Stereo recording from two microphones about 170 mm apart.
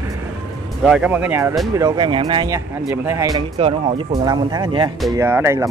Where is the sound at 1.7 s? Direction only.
20° right (ahead or behind).